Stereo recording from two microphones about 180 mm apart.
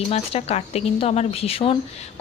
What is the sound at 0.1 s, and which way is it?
Speech, 35° left (ahead or behind).